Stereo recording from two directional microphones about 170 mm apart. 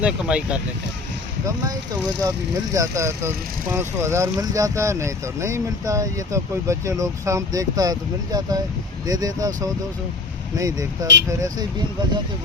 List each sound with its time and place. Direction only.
0.0 s speech: 5° right (ahead or behind)
1.5 s speech: 20° right (ahead or behind)
10.6 s speech: 20° right (ahead or behind)